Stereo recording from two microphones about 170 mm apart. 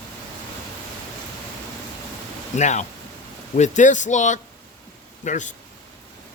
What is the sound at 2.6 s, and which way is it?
Speech, 45° left (ahead or behind).